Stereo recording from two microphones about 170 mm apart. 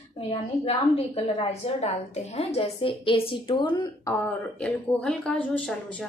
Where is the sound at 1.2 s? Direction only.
35° left (ahead or behind).